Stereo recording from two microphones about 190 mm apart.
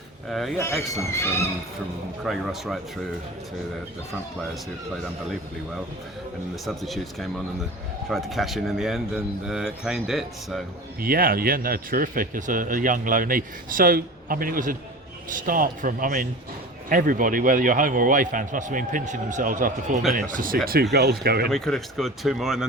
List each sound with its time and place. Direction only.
0.3 s speech: centre (ahead or behind)
0.6 s speech: 15° left (ahead or behind)
2.2 s speech: centre (ahead or behind)
6.7 s speech: centre (ahead or behind)
11.0 s speech: 50° right (ahead or behind)
20.9 s speech: 55° right (ahead or behind)
21.5 s speech: 5° left (ahead or behind)